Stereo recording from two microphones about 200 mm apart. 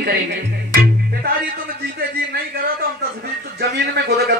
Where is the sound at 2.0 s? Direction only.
50° right (ahead or behind).